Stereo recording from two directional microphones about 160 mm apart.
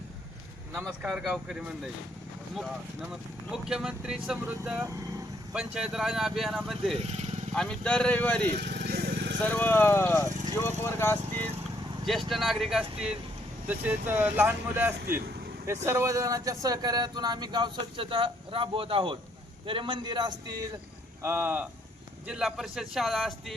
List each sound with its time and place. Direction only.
1.0 s speech: centre (ahead or behind)
7.0 s vehicle: 45° right (ahead or behind)
7.5 s speech: 5° left (ahead or behind)
8.5 s lawn mower: 90° right
9.5 s speech: 10° left (ahead or behind)
12.3 s speech: centre (ahead or behind); by 20.6 s 25° right (ahead or behind)
21.2 s speech: 15° right (ahead or behind)